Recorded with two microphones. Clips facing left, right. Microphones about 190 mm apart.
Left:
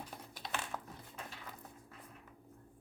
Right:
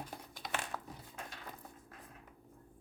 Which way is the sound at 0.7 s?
10° left (ahead or behind).